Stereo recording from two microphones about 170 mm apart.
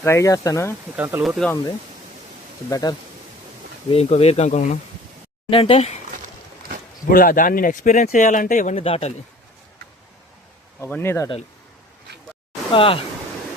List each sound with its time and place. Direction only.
0.0 s speech: 15° left (ahead or behind)
0.9 s speech: 15° right (ahead or behind)
1.2 s speech: centre (ahead or behind)
2.6 s speech: 20° left (ahead or behind)
3.9 s speech: 35° left (ahead or behind)
5.5 s speech: 30° left (ahead or behind)
7.0 s speech: 55° left (ahead or behind)
8.7 s speech: 35° left (ahead or behind)
10.8 s speech: 10° left (ahead or behind)
12.7 s speech: 30° left (ahead or behind)